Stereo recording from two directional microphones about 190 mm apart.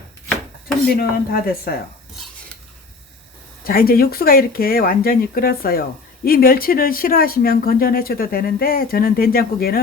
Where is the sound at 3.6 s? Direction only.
50° left (ahead or behind).